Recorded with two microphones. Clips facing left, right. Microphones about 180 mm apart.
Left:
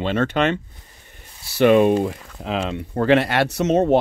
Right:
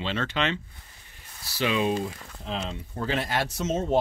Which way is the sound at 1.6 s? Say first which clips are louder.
Left 11 dB; 60° left (ahead or behind).